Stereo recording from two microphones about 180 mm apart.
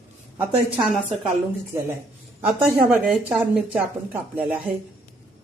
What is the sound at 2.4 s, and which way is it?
A woman's voice, 5° right (ahead or behind).